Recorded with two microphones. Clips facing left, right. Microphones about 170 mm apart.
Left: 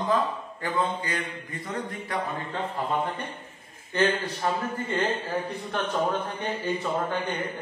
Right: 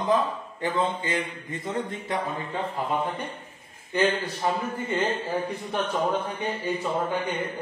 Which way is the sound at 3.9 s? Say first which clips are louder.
Right 1 dB; 10° right (ahead or behind).